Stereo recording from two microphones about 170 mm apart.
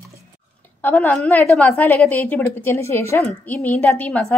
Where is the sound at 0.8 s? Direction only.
10° left (ahead or behind).